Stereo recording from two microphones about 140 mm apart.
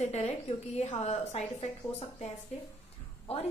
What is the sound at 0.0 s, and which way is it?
A woman's voice, 50° left (ahead or behind).